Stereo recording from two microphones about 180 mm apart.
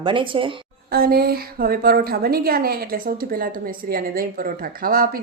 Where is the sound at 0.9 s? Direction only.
60° right (ahead or behind).